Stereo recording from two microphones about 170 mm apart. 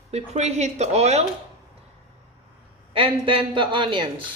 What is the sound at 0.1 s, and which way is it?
A woman's voice, 40° right (ahead or behind).